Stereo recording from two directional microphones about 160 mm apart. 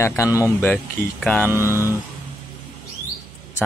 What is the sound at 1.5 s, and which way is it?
Speech, 15° right (ahead or behind).